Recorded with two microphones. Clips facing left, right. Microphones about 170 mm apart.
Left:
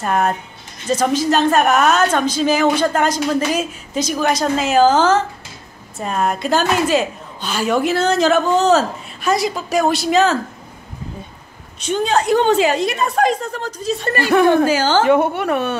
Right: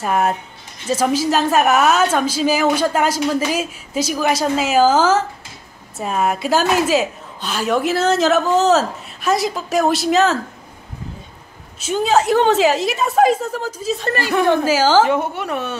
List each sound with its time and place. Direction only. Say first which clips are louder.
0.0 s a woman's voice: even; 5° right (ahead or behind)
11.8 s a woman's voice: right 1 dB; 5° right (ahead or behind)
15.0 s a woman's voice: left 5 dB; 60° left (ahead or behind)